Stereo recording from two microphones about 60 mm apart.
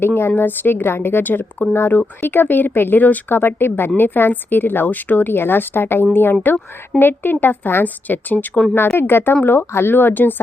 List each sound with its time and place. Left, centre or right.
0.0 s speech: left
1.7 s speech: left